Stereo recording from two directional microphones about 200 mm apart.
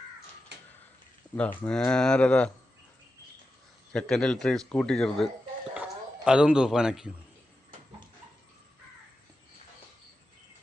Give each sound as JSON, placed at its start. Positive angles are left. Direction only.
{"t": 0.5, "sound": "a sound", "side_deg": -60}
{"t": 1.4, "sound": "speech", "side_deg": 5}
{"t": 3.9, "sound": "speech", "side_deg": 5}
{"t": 5.7, "sound": "gargling", "side_deg": -5}